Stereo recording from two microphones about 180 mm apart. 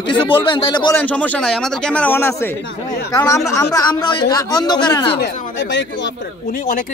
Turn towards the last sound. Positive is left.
turn(degrees=85)